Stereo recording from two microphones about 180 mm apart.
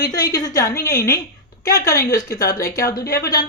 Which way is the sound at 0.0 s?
20° left (ahead or behind).